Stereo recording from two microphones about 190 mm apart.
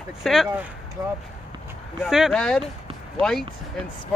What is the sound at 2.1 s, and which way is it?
Speech, centre (ahead or behind).